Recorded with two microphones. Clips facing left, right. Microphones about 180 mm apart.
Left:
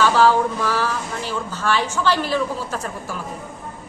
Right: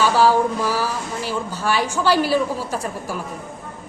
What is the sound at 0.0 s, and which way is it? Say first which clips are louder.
A woman's voice: even; 10° right (ahead or behind).